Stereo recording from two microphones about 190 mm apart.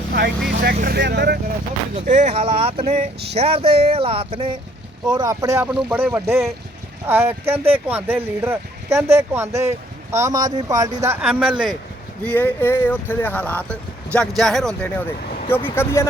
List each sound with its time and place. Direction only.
0.6 s speech: 55° right (ahead or behind)
2.0 s speech: 40° right (ahead or behind); by 11.2 s 15° right (ahead or behind)
11.2 s speech: 5° right (ahead or behind)
12.2 s speech: 10° left (ahead or behind)